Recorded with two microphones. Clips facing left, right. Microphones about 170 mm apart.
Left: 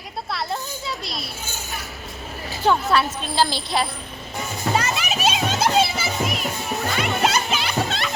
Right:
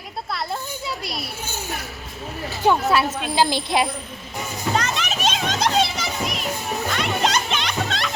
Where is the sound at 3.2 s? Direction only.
15° right (ahead or behind).